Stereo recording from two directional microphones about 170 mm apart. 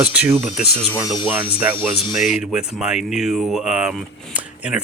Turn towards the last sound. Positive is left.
turn(degrees=-5)  # may be behind; listen again after turning